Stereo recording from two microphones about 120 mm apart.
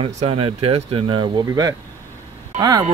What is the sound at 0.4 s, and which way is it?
Speech, 55° right (ahead or behind).